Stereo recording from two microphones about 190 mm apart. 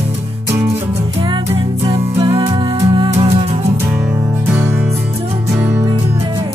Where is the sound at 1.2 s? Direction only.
25° right (ahead or behind).